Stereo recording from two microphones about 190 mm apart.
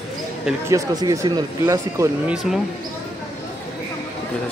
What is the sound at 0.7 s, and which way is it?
Speech, 20° right (ahead or behind).